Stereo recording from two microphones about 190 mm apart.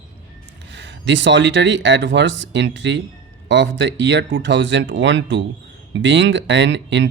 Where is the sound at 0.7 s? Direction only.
70° right (ahead or behind).